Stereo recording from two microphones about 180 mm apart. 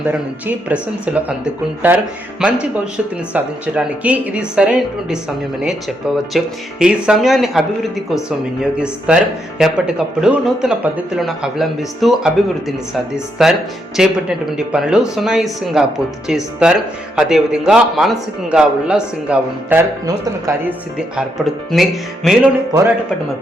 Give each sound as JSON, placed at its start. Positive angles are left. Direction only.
{"t": 0.1, "sound": "a woman's voice", "side_deg": -5}
{"t": 6.3, "sound": "speech", "side_deg": -5}
{"t": 20.1, "sound": "a woman's voice", "side_deg": -15}
{"t": 21.2, "sound": "speech", "side_deg": 0}